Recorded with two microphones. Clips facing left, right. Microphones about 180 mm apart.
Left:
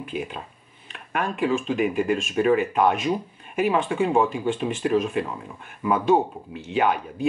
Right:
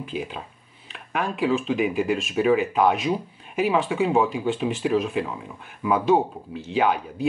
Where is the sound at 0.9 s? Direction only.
Centre (ahead or behind).